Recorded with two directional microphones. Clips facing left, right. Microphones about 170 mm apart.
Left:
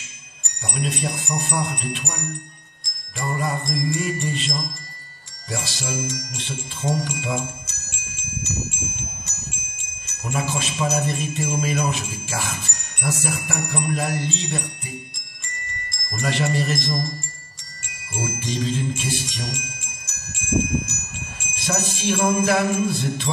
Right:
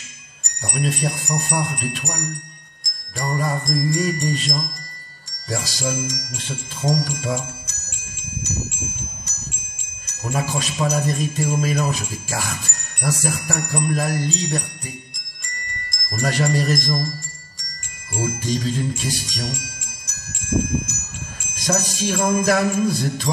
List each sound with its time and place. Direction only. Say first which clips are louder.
1.0 s speech: right 2 dB; 20° left (ahead or behind)
2.8 s jingle bell: right 2 dB; 40° right (ahead or behind)
10.0 s jingle bell: right 1 dB; 40° right (ahead or behind)
15.9 s wind chime: right 2 dB; 40° right (ahead or behind)
16.5 s jingle bell: right 3 dB; 40° right (ahead or behind)
18.1 s jingle bell: right 4 dB; 40° right (ahead or behind)
20.1 s wind chime: right 1 dB; 40° right (ahead or behind)
21.5 s jingle bell: right 3 dB; 40° right (ahead or behind)